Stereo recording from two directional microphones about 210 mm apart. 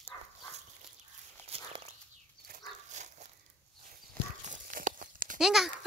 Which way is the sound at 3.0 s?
35° right (ahead or behind).